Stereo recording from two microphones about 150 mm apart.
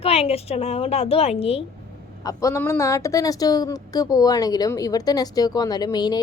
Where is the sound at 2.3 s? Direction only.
20° left (ahead or behind).